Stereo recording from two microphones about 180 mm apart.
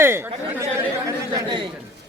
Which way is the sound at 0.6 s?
20° right (ahead or behind).